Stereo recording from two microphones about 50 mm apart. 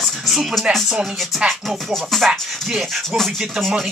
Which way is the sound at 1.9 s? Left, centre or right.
Centre.